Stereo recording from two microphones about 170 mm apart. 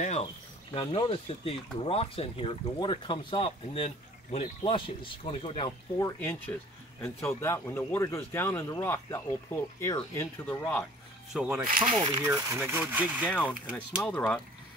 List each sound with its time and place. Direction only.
0.0 s speech: 40° left (ahead or behind)
6.1 s a man's voice: 10° left (ahead or behind)
11.3 s speech: 10° right (ahead or behind)
11.9 s speech: 25° right (ahead or behind)
12.4 s speech: 15° right (ahead or behind)
13.3 s a man's voice: 10° left (ahead or behind)